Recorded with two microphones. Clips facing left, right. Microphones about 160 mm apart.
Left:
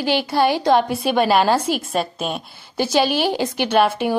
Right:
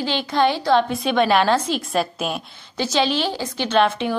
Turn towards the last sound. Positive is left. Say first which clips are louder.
# left 2 dB
turn(degrees=10)  # may be behind; listen again after turning